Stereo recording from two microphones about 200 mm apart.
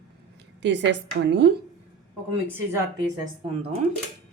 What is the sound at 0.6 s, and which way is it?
Speech, 60° right (ahead or behind).